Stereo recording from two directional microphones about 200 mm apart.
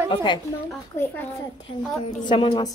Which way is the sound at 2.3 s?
25° left (ahead or behind).